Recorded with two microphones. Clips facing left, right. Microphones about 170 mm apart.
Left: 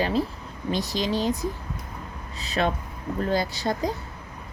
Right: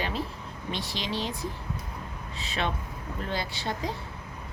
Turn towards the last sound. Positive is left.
turn(degrees=40)  # may be behind; listen again after turning